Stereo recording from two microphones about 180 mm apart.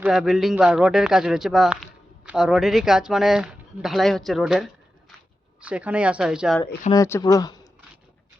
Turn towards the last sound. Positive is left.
turn(degrees=20)  # may be behind; listen again after turning